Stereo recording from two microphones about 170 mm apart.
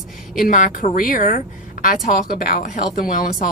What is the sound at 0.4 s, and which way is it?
Speech, 50° left (ahead or behind).